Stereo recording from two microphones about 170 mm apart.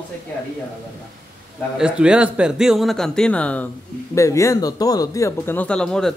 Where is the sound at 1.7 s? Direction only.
5° right (ahead or behind).